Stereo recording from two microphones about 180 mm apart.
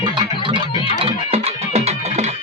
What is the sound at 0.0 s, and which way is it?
Music, 25° right (ahead or behind).